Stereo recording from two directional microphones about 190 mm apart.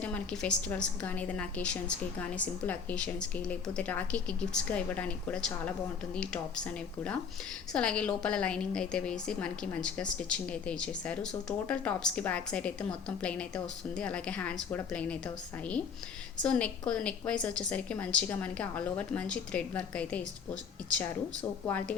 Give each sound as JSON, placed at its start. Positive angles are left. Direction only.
{"t": 0.0, "sound": "a woman's voice", "side_deg": 5}
{"t": 16.4, "sound": "a woman's voice", "side_deg": 5}
{"t": 21.7, "sound": "a woman's voice", "side_deg": 10}